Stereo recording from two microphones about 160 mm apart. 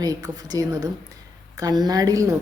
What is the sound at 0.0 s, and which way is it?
A woman's voice, 25° right (ahead or behind).